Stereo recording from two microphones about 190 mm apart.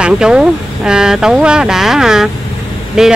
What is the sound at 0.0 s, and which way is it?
Speech, 5° right (ahead or behind).